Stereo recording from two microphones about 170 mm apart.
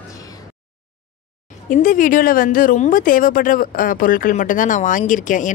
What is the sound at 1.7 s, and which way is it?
A woman's voice, 55° left (ahead or behind).